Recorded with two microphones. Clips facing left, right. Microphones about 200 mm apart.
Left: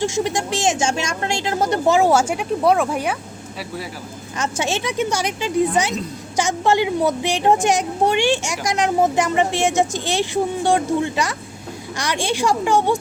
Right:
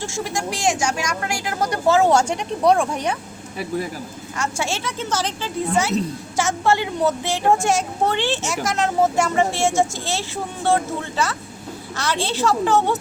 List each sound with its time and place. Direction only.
0.0 s speech: 20° left (ahead or behind)
2.0 s speech: 5° left (ahead or behind)
4.4 s speech: 20° left (ahead or behind)